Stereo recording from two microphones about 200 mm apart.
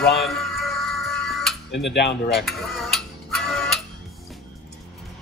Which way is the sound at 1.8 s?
60° left (ahead or behind).